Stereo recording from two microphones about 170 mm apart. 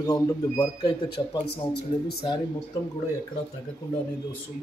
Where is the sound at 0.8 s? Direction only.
30° left (ahead or behind).